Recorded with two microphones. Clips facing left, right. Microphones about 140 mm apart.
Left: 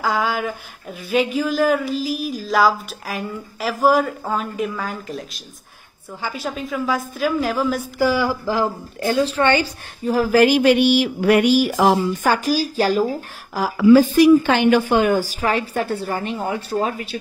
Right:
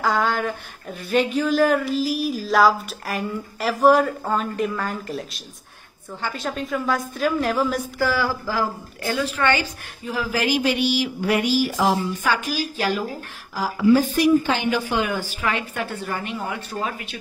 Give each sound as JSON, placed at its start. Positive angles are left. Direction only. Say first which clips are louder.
{"t": 0.0, "sound": "speech", "louder": "even", "side_deg": 0}
{"t": 8.0, "sound": "speech", "louder": "left 5 dB", "side_deg": 15}
{"t": 13.6, "sound": "a woman's voice", "louder": "left 5 dB", "side_deg": 90}